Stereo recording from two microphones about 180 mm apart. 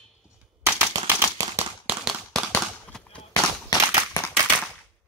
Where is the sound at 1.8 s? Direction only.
Centre (ahead or behind).